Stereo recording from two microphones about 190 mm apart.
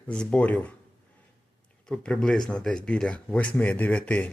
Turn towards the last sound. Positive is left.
turn(degrees=5)  # may be behind; listen again after turning